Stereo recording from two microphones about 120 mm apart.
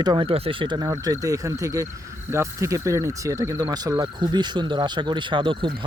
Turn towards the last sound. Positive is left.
turn(degrees=-45)  # may be behind; listen again after turning